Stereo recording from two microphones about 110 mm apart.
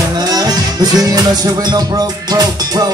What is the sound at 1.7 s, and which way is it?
Music, 35° right (ahead or behind).